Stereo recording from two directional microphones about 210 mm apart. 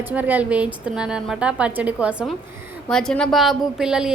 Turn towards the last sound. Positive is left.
turn(degrees=-5)  # may be behind; listen again after turning